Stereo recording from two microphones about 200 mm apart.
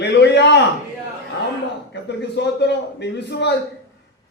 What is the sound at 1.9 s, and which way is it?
A man's voice, 60° left (ahead or behind).